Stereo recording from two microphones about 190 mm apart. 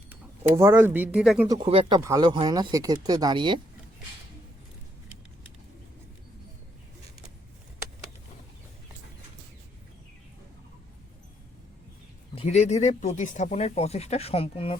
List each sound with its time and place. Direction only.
0.1 s speech: 15° right (ahead or behind)
1.5 s speech: 30° right (ahead or behind)
12.3 s speech: 30° left (ahead or behind)